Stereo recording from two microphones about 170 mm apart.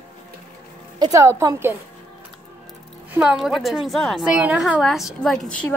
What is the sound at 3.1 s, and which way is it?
A woman's voice, centre (ahead or behind).